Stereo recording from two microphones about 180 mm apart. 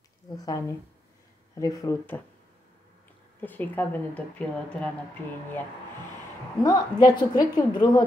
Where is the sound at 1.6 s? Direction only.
20° left (ahead or behind).